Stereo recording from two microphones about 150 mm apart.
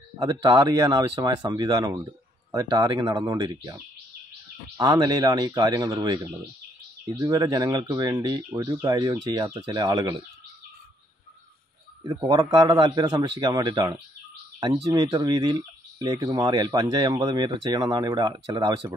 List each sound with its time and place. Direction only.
0.2 s speech: 25° right (ahead or behind)
4.7 s speech: 25° right (ahead or behind)
12.0 s speech: 25° right (ahead or behind)